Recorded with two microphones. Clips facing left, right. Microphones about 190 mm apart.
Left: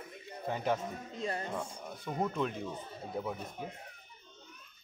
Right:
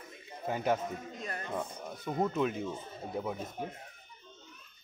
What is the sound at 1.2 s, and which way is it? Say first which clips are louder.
Speech: left 9 dB; 30° left (ahead or behind).